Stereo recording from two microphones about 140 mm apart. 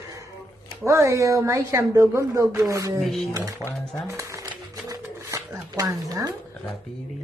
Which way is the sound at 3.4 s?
20° right (ahead or behind).